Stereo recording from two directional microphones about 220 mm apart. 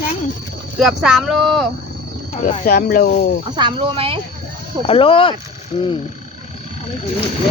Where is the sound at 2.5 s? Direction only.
40° left (ahead or behind).